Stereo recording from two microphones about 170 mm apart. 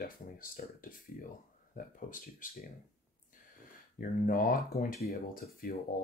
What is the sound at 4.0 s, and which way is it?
Speech, 55° left (ahead or behind).